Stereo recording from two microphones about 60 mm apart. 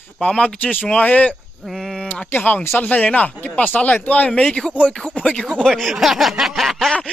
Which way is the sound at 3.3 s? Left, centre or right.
Left.